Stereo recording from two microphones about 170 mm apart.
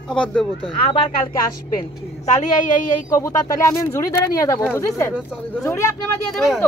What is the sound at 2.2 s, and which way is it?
Speech, 45° left (ahead or behind).